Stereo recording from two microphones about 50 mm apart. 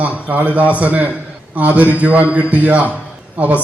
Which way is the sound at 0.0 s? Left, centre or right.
Right.